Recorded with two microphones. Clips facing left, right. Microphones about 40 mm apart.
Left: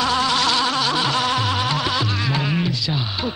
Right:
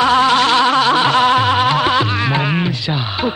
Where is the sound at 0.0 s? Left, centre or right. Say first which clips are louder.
Right 7 dB; right.